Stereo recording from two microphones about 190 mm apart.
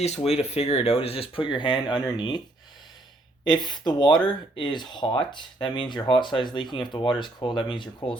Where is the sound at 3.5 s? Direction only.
25° left (ahead or behind).